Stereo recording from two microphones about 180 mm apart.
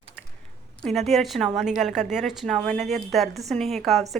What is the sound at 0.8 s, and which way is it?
A woman's voice, centre (ahead or behind).